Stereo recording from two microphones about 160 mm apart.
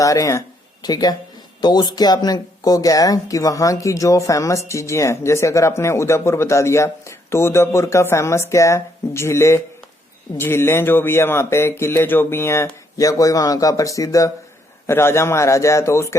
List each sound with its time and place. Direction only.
0.0 s speech: 20° left (ahead or behind)